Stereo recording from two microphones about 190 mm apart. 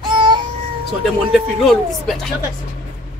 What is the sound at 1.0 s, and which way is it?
Speech, centre (ahead or behind).